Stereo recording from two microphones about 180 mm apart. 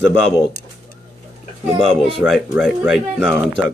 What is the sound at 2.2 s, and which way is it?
A man's voice, 5° right (ahead or behind).